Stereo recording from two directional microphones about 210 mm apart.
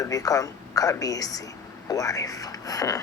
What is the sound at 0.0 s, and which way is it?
Speech, 15° left (ahead or behind).